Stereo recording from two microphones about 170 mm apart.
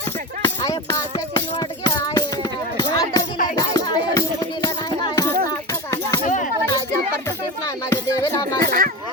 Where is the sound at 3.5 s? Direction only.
20° left (ahead or behind).